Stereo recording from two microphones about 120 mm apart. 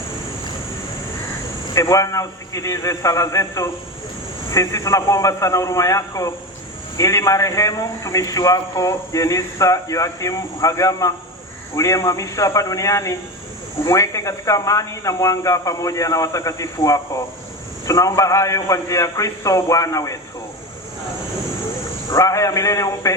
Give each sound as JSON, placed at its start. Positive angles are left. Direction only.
{"t": 1.7, "sound": "a man's voice", "side_deg": 25}
{"t": 22.1, "sound": "a man's voice", "side_deg": 25}